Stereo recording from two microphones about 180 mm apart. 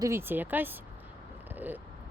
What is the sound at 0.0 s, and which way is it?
Speech, 15° right (ahead or behind).